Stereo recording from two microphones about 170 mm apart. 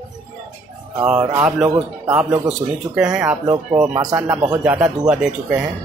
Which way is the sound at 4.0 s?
25° right (ahead or behind).